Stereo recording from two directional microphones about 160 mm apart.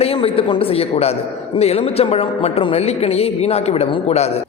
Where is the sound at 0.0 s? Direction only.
35° left (ahead or behind).